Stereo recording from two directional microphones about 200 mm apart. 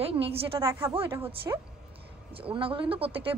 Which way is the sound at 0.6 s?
15° right (ahead or behind).